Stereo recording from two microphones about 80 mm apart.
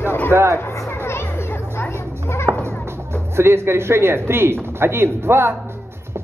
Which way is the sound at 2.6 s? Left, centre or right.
Right.